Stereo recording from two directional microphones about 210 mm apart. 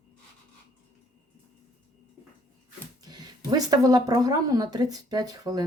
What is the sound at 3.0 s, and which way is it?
Speech, 20° right (ahead or behind).